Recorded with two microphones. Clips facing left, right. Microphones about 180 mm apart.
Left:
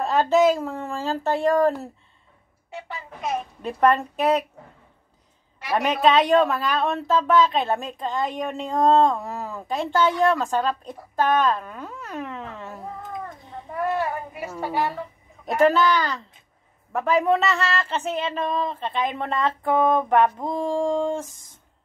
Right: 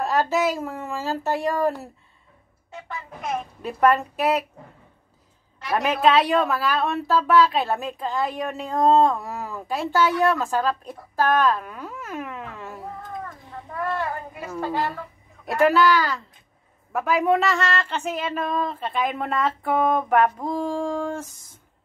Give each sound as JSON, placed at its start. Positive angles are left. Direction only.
{"t": 0.0, "sound": "a woman's voice", "side_deg": -5}
{"t": 3.6, "sound": "a woman's voice", "side_deg": -5}
{"t": 5.9, "sound": "a woman's voice", "side_deg": -5}
{"t": 13.2, "sound": "a sound", "side_deg": 20}
{"t": 15.6, "sound": "a woman's voice", "side_deg": -5}
{"t": 20.6, "sound": "a sound", "side_deg": 20}